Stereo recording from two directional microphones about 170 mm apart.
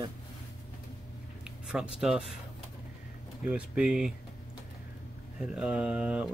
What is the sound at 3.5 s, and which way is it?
Speech, 5° right (ahead or behind).